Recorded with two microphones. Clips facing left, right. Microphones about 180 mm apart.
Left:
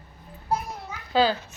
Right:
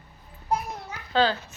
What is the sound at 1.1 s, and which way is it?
Speech, 10° left (ahead or behind).